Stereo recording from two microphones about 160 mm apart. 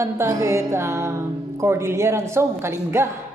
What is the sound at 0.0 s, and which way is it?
A woman's voice, 20° right (ahead or behind).